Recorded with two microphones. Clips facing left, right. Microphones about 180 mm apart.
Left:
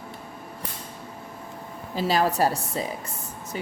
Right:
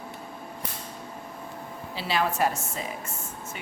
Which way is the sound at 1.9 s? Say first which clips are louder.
Left 5 dB; 40° left (ahead or behind).